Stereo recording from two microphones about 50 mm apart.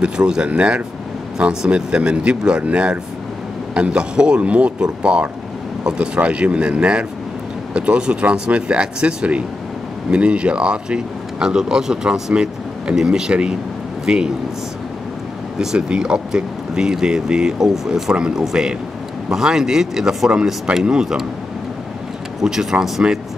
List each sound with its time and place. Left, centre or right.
0.0 s speech: centre
15.6 s speech: centre
22.4 s speech: centre